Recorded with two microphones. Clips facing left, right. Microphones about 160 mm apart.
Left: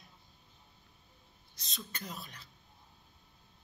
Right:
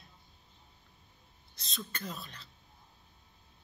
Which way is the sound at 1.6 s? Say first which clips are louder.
Right 4 dB; 15° left (ahead or behind).